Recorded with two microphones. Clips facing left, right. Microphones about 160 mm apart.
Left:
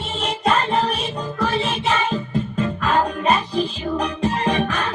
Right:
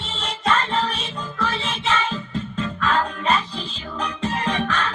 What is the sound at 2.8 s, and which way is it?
Music, 15° left (ahead or behind).